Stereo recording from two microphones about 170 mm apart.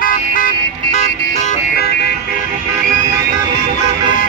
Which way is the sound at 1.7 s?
70° left (ahead or behind).